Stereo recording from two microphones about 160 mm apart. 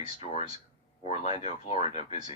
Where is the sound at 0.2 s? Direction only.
45° left (ahead or behind).